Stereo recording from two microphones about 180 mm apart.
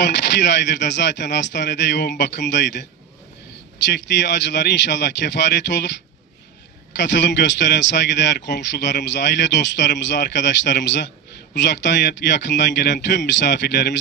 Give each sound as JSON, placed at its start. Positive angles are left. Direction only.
{"t": 0.0, "sound": "a man's voice", "side_deg": 70}
{"t": 7.0, "sound": "a man's voice", "side_deg": 75}